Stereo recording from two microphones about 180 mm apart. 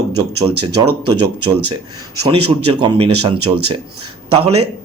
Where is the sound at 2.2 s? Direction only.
30° right (ahead or behind).